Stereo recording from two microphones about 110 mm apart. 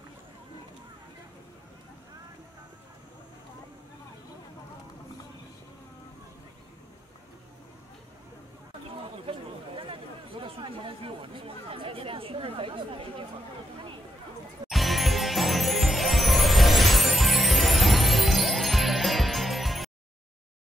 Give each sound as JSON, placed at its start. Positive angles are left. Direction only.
{"t": 9.2, "sound": "chatter", "side_deg": -55}
{"t": 14.7, "sound": "music", "side_deg": 0}